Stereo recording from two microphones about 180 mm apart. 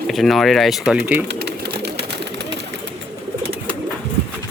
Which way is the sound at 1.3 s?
65° right (ahead or behind).